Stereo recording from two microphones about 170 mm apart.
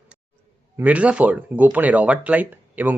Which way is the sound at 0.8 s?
10° right (ahead or behind).